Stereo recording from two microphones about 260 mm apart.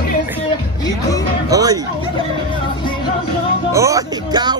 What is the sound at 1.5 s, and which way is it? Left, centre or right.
Speech, centre.